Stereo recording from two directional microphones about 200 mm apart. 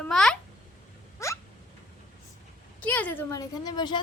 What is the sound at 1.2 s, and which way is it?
Hiccup, 15° left (ahead or behind).